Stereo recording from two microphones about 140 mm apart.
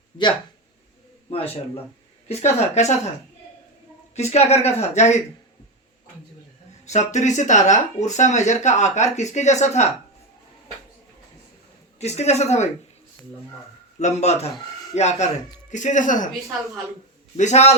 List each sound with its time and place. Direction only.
1.3 s speech: 45° left (ahead or behind)
4.1 s speech: 50° left (ahead or behind)
6.8 s speech: 55° left (ahead or behind)
11.9 s speech: 50° left (ahead or behind)
14.0 s speech: 50° left (ahead or behind)
17.3 s speech: 55° left (ahead or behind)